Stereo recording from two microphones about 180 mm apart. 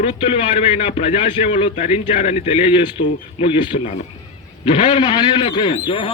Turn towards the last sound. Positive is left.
turn(degrees=25)  # may be behind; listen again after turning